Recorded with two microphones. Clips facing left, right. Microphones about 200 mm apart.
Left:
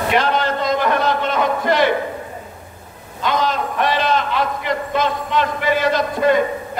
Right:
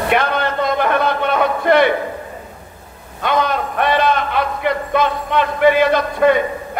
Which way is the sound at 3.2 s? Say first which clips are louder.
Right 2 dB; 60° right (ahead or behind).